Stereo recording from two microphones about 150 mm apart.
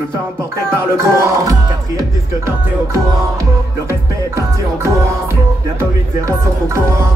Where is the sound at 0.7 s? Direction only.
20° right (ahead or behind).